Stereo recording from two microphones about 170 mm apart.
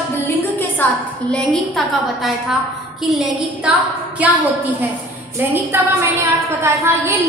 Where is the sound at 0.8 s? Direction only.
10° left (ahead or behind).